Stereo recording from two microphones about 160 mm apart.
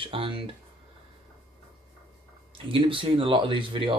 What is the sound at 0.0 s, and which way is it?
Speech, 35° right (ahead or behind).